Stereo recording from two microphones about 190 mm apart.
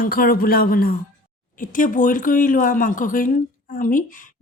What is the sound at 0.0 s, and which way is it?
Mantra, 50° left (ahead or behind).